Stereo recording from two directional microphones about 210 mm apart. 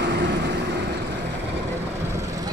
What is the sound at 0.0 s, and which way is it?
Vehicle, 55° right (ahead or behind).